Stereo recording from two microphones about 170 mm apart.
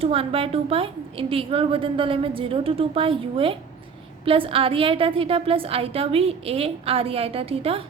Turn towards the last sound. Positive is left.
turn(degrees=-35)  # may be behind; listen again after turning